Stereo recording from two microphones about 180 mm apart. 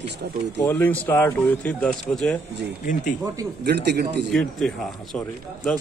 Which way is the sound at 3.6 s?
65° right (ahead or behind).